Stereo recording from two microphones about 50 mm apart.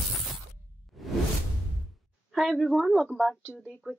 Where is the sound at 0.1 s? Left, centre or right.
Centre.